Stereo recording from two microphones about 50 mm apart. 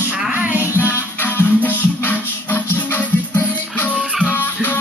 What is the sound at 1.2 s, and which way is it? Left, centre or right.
Music, left.